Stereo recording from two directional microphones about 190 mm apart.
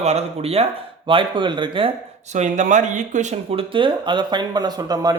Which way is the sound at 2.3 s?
40° right (ahead or behind).